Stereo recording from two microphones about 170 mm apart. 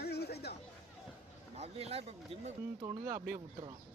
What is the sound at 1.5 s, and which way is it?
Speech, 35° right (ahead or behind).